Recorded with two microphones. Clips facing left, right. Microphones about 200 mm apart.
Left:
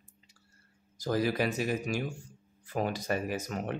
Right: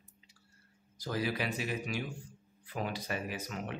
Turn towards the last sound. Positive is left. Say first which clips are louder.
# left 6 dB
turn(degrees=45)  # may be behind; listen again after turning